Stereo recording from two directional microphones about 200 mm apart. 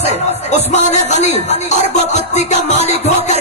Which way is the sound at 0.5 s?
35° left (ahead or behind).